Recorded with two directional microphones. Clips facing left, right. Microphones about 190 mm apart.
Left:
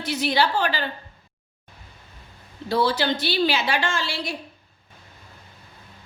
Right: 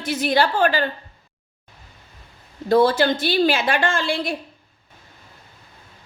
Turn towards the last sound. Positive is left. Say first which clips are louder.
# right 5 dB
turn(degrees=-55)  # may be behind; listen again after turning